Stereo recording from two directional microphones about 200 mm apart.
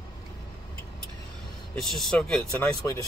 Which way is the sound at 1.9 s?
Centre (ahead or behind).